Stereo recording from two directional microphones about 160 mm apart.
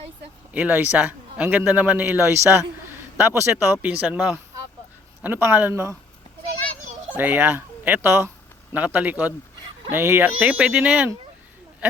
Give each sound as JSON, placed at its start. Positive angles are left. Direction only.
{"t": 0.5, "sound": "a man's voice", "side_deg": -10}
{"t": 7.2, "sound": "a man's voice", "side_deg": -10}